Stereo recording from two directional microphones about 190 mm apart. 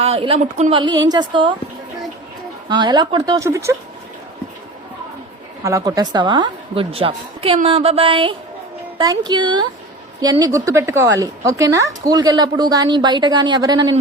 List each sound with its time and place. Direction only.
0.0 s speech: 30° right (ahead or behind)
0.8 s a woman's voice: 20° right (ahead or behind)
2.6 s a woman's voice: 25° right (ahead or behind)
5.6 s a woman's voice: 15° right (ahead or behind)